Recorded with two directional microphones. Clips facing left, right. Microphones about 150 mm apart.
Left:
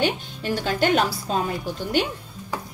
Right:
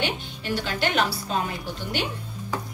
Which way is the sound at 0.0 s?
40° left (ahead or behind).